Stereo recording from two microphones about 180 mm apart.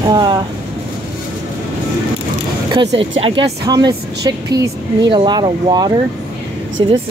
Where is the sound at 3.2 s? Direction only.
25° right (ahead or behind).